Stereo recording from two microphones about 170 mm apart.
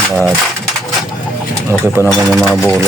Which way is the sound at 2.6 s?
15° right (ahead or behind).